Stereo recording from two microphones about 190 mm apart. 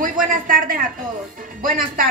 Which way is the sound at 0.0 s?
45° right (ahead or behind).